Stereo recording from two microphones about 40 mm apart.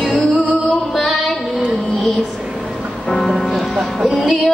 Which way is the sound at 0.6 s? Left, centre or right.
Left.